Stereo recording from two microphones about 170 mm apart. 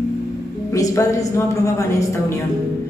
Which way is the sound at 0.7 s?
20° left (ahead or behind).